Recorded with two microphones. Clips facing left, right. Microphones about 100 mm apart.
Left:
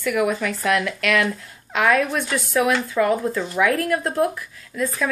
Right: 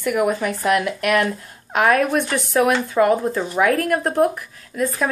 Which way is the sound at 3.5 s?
40° right (ahead or behind).